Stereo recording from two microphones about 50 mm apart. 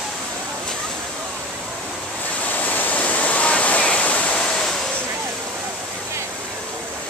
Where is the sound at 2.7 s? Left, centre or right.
Left.